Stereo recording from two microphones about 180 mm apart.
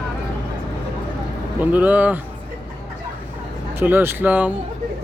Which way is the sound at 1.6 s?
10° right (ahead or behind).